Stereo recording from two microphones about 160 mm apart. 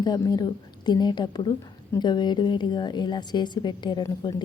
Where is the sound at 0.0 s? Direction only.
25° left (ahead or behind).